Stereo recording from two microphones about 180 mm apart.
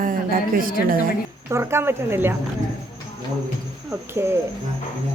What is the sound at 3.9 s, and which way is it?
Speech, 15° right (ahead or behind).